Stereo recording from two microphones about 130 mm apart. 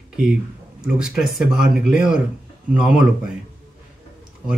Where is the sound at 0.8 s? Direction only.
5° right (ahead or behind).